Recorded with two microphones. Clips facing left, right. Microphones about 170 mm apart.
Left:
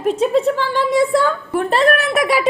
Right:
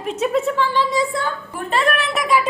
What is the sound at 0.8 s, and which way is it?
Speech, 55° left (ahead or behind).